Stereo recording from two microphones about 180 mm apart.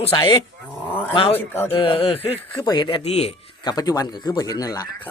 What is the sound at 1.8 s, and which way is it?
Speech, 30° left (ahead or behind).